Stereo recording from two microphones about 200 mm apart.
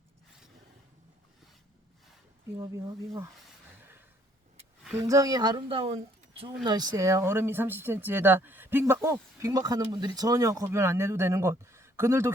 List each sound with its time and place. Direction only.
2.6 s speech: 15° right (ahead or behind)
5.0 s a woman's voice: 15° right (ahead or behind)